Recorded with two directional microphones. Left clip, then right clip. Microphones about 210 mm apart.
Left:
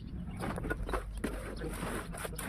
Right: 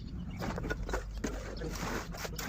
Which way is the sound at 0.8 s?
25° left (ahead or behind).